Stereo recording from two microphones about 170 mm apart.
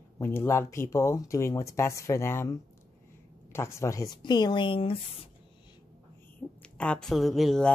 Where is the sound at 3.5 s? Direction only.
15° left (ahead or behind); by 5.3 s 30° left (ahead or behind).